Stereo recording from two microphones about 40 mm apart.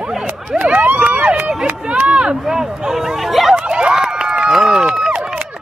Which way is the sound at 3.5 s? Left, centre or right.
Right.